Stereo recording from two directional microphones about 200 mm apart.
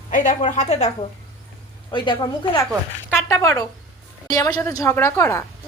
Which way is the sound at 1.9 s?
25° left (ahead or behind).